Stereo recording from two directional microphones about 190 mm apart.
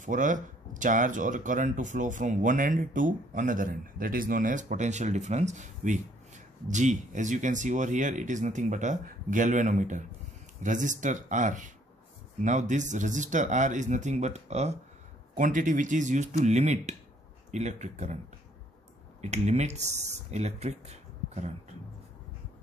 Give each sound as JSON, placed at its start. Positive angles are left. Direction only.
{"t": 0.0, "sound": "speech", "side_deg": -40}
{"t": 19.2, "sound": "speech", "side_deg": -35}